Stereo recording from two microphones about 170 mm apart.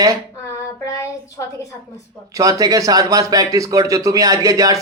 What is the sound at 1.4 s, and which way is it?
Speech, 15° left (ahead or behind).